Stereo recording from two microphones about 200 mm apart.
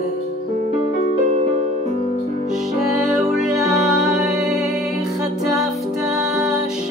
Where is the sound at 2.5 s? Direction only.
Centre (ahead or behind).